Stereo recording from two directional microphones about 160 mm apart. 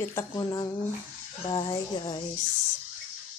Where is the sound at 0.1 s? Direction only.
20° left (ahead or behind).